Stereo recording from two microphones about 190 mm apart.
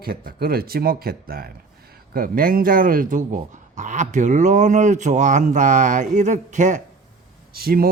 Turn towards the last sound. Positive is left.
turn(degrees=-50)  # may be behind; listen again after turning